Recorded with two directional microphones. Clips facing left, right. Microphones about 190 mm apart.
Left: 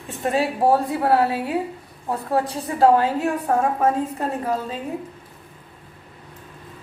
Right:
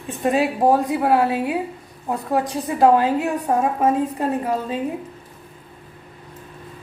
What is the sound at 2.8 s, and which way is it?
A woman's voice, 15° right (ahead or behind).